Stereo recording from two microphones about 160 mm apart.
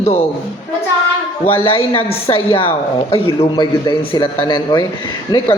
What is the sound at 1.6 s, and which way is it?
A man's voice, 35° left (ahead or behind).